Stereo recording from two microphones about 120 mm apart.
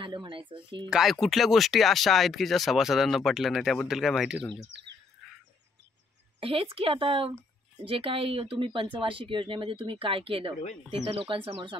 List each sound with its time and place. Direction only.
0.0 s speech: 45° right (ahead or behind)
0.8 s speech: 5° right (ahead or behind)
6.4 s speech: 50° right (ahead or behind)